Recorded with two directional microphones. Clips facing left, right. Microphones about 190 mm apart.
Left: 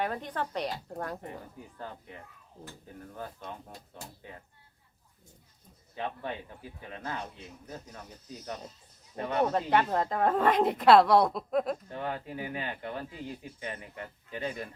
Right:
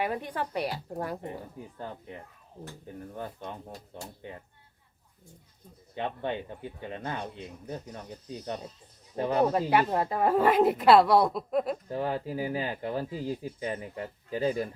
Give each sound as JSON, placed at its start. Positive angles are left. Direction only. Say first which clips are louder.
{"t": 0.0, "sound": "a woman's voice", "louder": "right 2 dB", "side_deg": -10}
{"t": 5.9, "sound": "speech", "louder": "right 4 dB", "side_deg": -25}
{"t": 9.5, "sound": "a woman's voice", "louder": "right 2 dB", "side_deg": -10}
{"t": 11.9, "sound": "speech", "louder": "right 5 dB", "side_deg": -35}